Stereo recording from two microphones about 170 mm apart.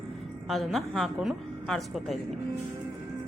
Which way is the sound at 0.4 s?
Centre (ahead or behind).